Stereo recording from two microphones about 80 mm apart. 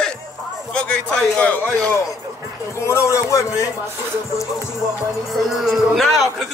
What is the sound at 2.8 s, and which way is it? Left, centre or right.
Speech, left.